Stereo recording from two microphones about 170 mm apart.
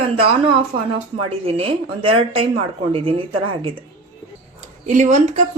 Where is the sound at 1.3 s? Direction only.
35° right (ahead or behind).